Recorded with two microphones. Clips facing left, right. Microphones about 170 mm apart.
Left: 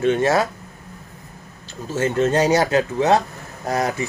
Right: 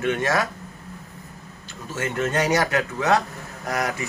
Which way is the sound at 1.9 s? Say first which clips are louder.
Left 6 dB; 30° left (ahead or behind).